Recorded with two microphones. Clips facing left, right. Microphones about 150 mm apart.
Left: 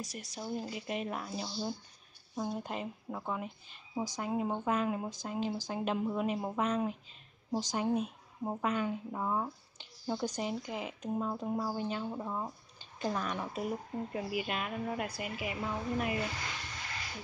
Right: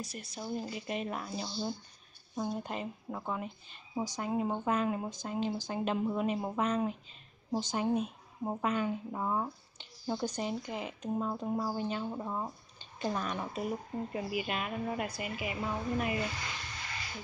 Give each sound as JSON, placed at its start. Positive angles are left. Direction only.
{"t": 0.0, "sound": "speech", "side_deg": 90}
{"t": 0.4, "sound": "a woman's voice", "side_deg": 5}